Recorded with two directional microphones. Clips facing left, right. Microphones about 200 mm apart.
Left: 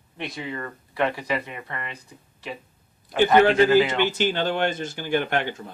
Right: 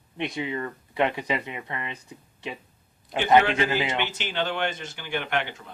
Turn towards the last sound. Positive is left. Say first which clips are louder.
# left 3 dB
turn(degrees=40)  # may be behind; listen again after turning